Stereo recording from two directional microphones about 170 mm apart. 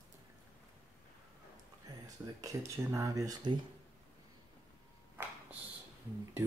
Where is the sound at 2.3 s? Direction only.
20° right (ahead or behind).